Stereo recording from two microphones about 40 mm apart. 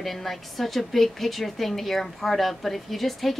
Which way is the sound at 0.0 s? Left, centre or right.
Centre.